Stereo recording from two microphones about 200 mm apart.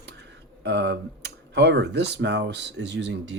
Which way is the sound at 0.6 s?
55° right (ahead or behind).